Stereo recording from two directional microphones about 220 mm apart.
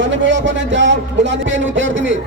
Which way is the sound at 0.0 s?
55° right (ahead or behind).